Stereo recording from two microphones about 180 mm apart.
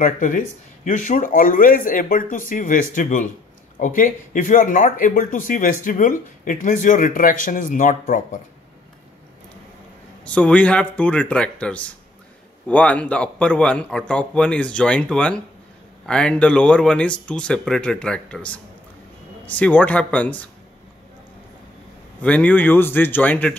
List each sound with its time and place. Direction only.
0.0 s speech: 45° left (ahead or behind)
10.2 s a man's voice: 5° left (ahead or behind)
22.2 s a man's voice: 10° left (ahead or behind)